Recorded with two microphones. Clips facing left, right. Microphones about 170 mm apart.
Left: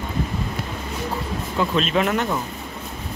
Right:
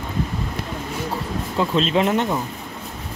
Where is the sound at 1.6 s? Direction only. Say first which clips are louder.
Right 2 dB; 25° right (ahead or behind).